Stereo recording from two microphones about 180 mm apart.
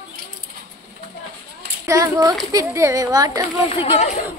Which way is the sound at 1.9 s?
20° right (ahead or behind).